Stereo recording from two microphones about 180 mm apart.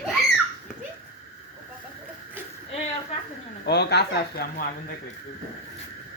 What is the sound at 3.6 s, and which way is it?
Speech, 65° left (ahead or behind).